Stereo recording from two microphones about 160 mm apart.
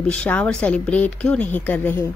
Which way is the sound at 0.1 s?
5° left (ahead or behind).